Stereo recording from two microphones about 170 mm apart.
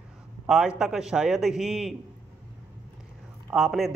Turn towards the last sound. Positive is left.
turn(degrees=0)  # may be behind; listen again after turning